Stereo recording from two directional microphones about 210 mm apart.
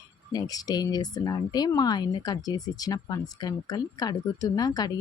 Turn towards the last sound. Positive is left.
turn(degrees=20)  # may be behind; listen again after turning